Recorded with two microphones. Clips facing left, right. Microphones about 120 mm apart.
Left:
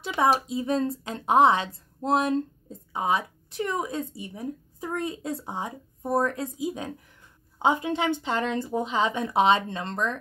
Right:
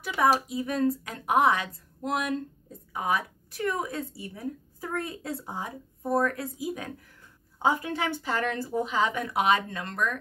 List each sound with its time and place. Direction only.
0.0 s a woman's voice: 25° left (ahead or behind)